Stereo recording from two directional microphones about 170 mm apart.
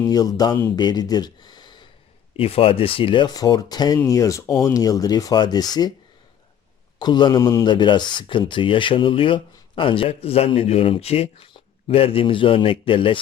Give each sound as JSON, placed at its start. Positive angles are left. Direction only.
{"t": 0.0, "sound": "speech", "side_deg": 20}
{"t": 7.0, "sound": "speech", "side_deg": 25}